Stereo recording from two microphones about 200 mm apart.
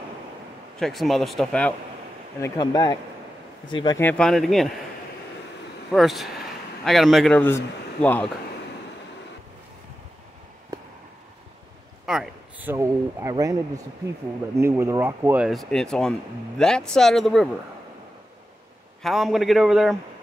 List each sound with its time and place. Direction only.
0.7 s speech: centre (ahead or behind)
2.4 s speech: 20° left (ahead or behind)
4.0 s speech: 5° left (ahead or behind)
5.9 s speech: centre (ahead or behind)
10.7 s a sound: 15° right (ahead or behind)
12.1 s speech: 5° right (ahead or behind)
14.6 s speech: 15° right (ahead or behind)
19.0 s speech: centre (ahead or behind)